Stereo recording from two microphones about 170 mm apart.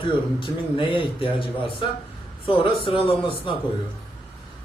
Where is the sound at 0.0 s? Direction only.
30° left (ahead or behind).